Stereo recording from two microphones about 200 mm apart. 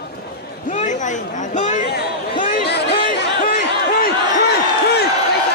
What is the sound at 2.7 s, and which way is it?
Chatter, 55° left (ahead or behind).